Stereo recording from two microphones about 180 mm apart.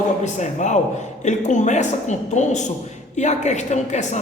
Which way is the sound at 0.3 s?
40° left (ahead or behind).